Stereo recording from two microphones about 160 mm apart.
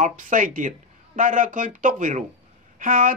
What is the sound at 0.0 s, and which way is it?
Speech, 55° right (ahead or behind).